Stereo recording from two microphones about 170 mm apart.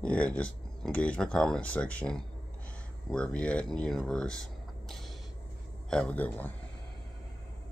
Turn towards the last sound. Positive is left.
turn(degrees=10)  # may be behind; listen again after turning